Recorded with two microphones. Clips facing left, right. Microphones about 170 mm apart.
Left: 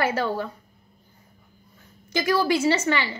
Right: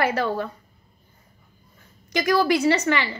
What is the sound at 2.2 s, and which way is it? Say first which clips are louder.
Speech: right 2 dB; 30° left (ahead or behind).